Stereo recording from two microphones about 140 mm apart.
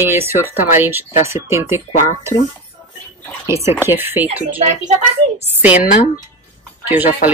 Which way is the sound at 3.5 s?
20° right (ahead or behind).